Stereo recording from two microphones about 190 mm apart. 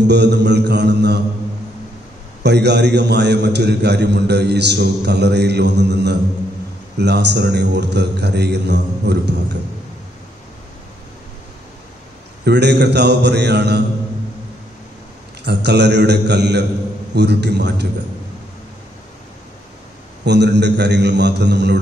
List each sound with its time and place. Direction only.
0.1 s a man's voice: 65° right (ahead or behind)
2.4 s a man's voice: 60° right (ahead or behind)
12.4 s a man's voice: 65° right (ahead or behind)
15.4 s a man's voice: 65° right (ahead or behind)
20.2 s a man's voice: 65° right (ahead or behind)